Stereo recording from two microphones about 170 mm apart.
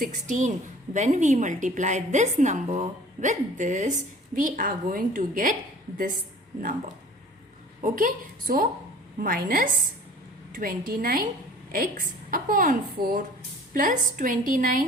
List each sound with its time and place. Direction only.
0.0 s a woman's voice: 50° right (ahead or behind)
6.6 s a woman's voice: 50° right (ahead or behind)